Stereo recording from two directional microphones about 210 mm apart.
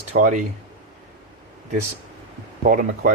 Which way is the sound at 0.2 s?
40° right (ahead or behind).